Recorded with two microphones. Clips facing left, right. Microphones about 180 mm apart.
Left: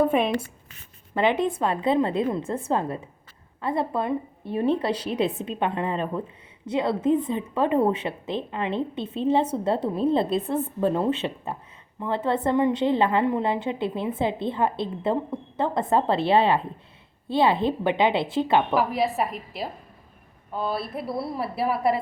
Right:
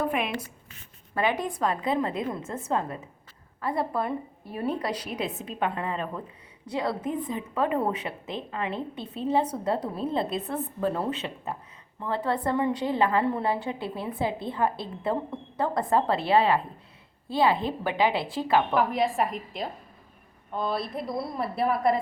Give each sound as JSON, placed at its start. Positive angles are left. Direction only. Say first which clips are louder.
{"t": 1.1, "sound": "a woman's voice", "louder": "left 5 dB", "side_deg": 25}
{"t": 18.7, "sound": "a woman's voice", "louder": "left 1 dB", "side_deg": 5}